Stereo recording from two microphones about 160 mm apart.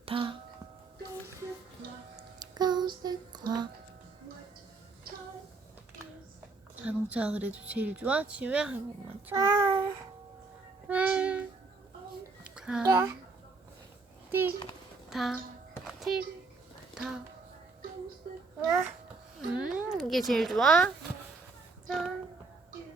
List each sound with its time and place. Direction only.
0.0 s music: 35° right (ahead or behind)
2.1 s music: 25° right (ahead or behind)
6.8 s speech: 10° right (ahead or behind)
10.8 s a sound: 10° right (ahead or behind)
12.8 s speech: 15° right (ahead or behind)
14.3 s a child's voice: 15° right (ahead or behind)
15.1 s speech: centre (ahead or behind)
15.9 s a sound: centre (ahead or behind)
19.5 s speech: 5° right (ahead or behind)
21.8 s female singing: 5° right (ahead or behind)